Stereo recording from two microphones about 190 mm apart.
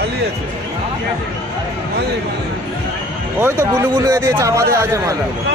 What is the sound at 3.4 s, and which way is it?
A man's voice, 15° right (ahead or behind).